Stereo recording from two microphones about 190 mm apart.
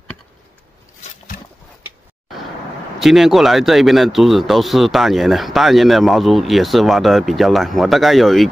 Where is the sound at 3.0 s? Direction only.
Centre (ahead or behind).